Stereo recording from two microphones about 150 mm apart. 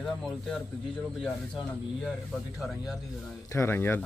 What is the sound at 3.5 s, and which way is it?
Speech, 15° left (ahead or behind).